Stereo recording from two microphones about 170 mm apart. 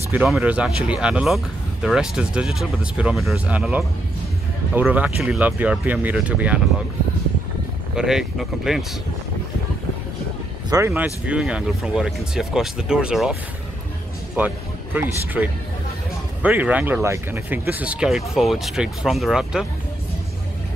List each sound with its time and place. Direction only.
0.1 s speech: 10° right (ahead or behind)
7.9 s speech: 5° right (ahead or behind)
10.7 s speech: 20° right (ahead or behind)
11.2 s speech: 5° right (ahead or behind)